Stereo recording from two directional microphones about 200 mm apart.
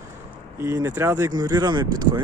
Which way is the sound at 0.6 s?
10° right (ahead or behind).